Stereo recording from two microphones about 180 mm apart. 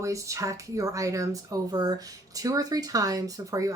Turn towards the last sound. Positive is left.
turn(degrees=-20)  # may be behind; listen again after turning